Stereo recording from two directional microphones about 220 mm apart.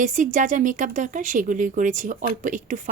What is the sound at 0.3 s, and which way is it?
Speech, 35° right (ahead or behind).